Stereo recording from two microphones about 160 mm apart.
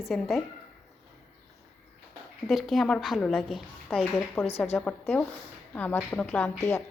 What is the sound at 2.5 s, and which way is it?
A woman's voice, centre (ahead or behind).